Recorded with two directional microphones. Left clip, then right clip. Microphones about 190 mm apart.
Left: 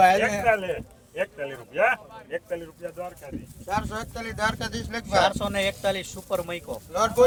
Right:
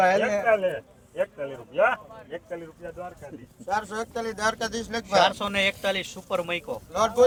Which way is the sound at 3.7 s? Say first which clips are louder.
Right 1 dB; 15° right (ahead or behind).